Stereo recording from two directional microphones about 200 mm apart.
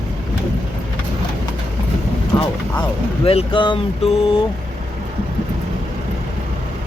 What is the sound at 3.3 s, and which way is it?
Speech, 25° left (ahead or behind).